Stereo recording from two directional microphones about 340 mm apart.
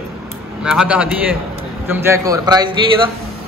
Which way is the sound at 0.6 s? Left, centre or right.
Centre.